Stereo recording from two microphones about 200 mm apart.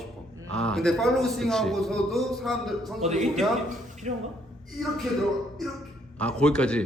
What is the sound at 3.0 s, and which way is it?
A man's voice, 35° right (ahead or behind).